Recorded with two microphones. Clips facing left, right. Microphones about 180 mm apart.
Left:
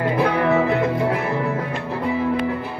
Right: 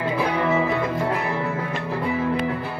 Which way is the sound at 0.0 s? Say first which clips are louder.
Left 3 dB; 60° left (ahead or behind).